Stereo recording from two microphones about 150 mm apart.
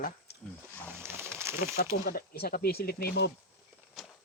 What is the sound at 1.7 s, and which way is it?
Speech, 90° left.